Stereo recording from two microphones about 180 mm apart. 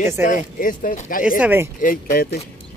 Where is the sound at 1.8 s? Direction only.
50° left (ahead or behind).